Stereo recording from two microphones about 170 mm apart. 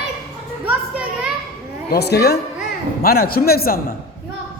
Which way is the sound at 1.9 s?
75° left (ahead or behind).